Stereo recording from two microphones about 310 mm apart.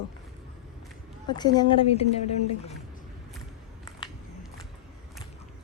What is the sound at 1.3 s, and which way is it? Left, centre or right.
Speech, centre.